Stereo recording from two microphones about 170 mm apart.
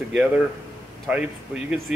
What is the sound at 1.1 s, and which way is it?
Speech, 5° right (ahead or behind).